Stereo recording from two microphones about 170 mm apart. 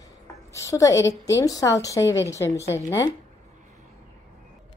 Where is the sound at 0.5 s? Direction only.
20° left (ahead or behind).